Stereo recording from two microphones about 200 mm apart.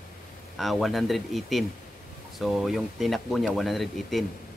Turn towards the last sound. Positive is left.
turn(degrees=0)  # may be behind; listen again after turning